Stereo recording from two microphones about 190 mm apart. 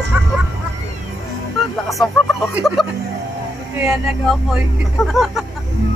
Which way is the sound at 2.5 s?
Centre (ahead or behind).